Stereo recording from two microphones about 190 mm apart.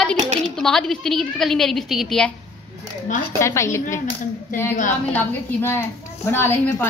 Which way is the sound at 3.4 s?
15° left (ahead or behind).